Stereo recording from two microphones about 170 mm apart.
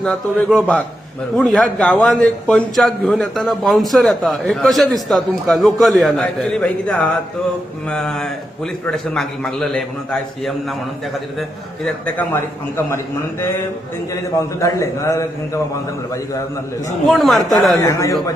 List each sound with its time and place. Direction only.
0.0 s a man's voice: 5° left (ahead or behind)
11.9 s a man's voice: 10° left (ahead or behind)
14.1 s a man's voice: 20° left (ahead or behind)
17.1 s a man's voice: centre (ahead or behind)
17.7 s a man's voice: 15° left (ahead or behind)